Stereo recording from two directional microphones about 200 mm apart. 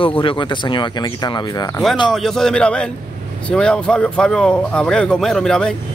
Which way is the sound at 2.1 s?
Centre (ahead or behind).